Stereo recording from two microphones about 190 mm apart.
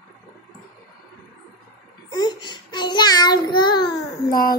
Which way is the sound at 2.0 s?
20° left (ahead or behind).